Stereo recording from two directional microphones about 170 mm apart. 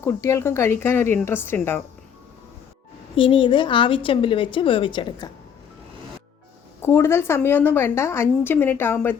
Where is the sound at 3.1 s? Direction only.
30° left (ahead or behind).